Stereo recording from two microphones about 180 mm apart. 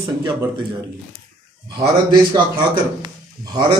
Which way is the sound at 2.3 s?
25° right (ahead or behind).